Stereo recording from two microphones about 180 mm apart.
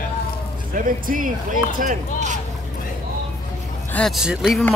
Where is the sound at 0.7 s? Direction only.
50° right (ahead or behind).